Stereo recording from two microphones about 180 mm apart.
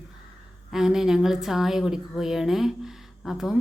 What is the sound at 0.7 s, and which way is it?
A woman's voice, 5° right (ahead or behind).